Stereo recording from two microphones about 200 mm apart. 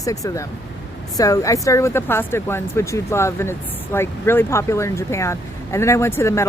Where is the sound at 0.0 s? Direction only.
15° left (ahead or behind).